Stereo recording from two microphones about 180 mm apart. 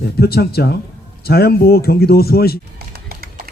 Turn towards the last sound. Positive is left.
turn(degrees=-55)  # may be behind; listen again after turning